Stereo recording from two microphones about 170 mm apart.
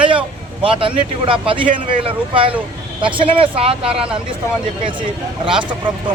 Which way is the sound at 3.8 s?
5° right (ahead or behind).